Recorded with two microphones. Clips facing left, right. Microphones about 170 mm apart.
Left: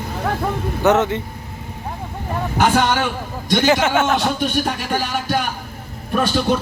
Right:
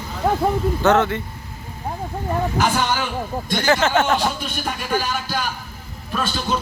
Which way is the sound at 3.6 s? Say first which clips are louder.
Left 1 dB; 15° left (ahead or behind).